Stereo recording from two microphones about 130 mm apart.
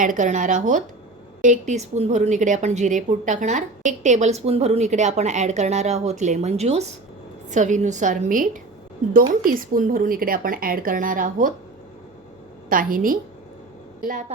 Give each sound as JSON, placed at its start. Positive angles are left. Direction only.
{"t": 0.0, "sound": "a woman's voice", "side_deg": -75}
{"t": 7.5, "sound": "a woman's voice", "side_deg": -70}
{"t": 12.6, "sound": "a woman's voice", "side_deg": -90}